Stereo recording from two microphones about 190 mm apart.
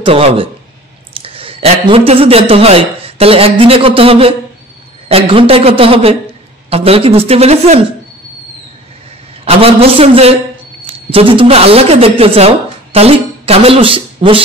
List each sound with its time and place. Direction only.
0.0 s a man's voice: 30° right (ahead or behind)
9.4 s a woman's voice: 30° right (ahead or behind)